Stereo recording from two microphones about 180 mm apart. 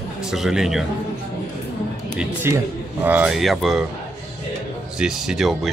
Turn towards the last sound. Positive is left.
turn(degrees=0)  # may be behind; listen again after turning